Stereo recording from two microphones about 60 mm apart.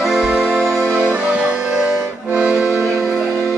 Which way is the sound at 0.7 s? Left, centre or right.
Right.